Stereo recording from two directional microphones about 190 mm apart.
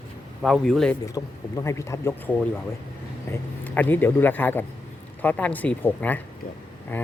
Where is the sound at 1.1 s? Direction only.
15° left (ahead or behind).